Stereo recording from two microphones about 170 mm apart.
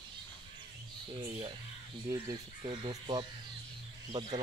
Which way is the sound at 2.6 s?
30° right (ahead or behind).